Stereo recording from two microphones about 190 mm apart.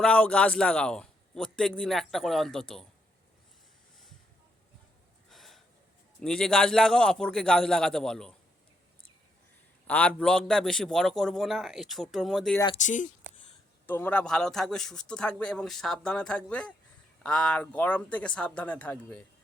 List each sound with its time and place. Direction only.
0.0 s speech: 5° left (ahead or behind)
5.3 s a sound: centre (ahead or behind)
6.1 s speech: 5° left (ahead or behind)
9.8 s speech: 5° left (ahead or behind)
12.8 s speech: 40° left (ahead or behind)
13.8 s speech: 10° left (ahead or behind)